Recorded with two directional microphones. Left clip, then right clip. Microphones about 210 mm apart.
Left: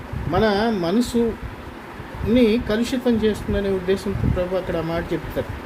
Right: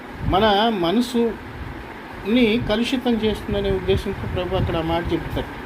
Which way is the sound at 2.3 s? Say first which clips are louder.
Left 1 dB; 45° left (ahead or behind).